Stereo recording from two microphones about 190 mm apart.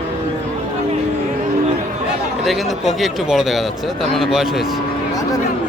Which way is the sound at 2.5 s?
Centre (ahead or behind).